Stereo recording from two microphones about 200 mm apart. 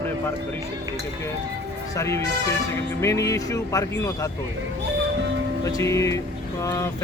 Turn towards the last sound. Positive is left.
turn(degrees=15)  # may be behind; listen again after turning